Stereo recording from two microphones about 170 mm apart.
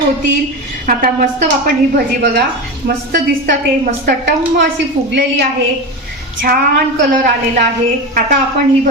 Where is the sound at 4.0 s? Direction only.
60° right (ahead or behind).